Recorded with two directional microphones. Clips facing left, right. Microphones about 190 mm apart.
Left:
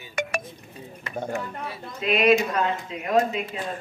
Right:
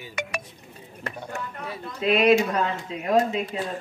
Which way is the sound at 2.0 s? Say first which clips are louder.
Right 1 dB; 35° right (ahead or behind).